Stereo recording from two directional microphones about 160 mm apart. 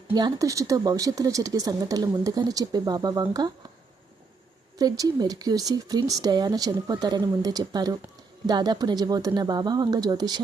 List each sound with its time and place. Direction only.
0.1 s speech: 25° right (ahead or behind)
4.8 s speech: 25° right (ahead or behind)